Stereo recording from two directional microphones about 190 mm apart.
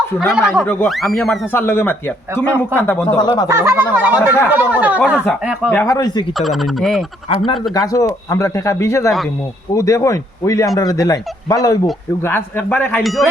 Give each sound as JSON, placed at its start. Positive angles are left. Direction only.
{"t": 0.3, "sound": "speech", "side_deg": -5}
{"t": 0.6, "sound": "speech", "side_deg": 10}
{"t": 0.9, "sound": "speech", "side_deg": 0}
{"t": 3.2, "sound": "speech", "side_deg": 20}
{"t": 3.4, "sound": "speech", "side_deg": -15}
{"t": 5.1, "sound": "speech", "side_deg": 5}
{"t": 6.3, "sound": "speech", "side_deg": 0}
{"t": 7.7, "sound": "speech", "side_deg": 20}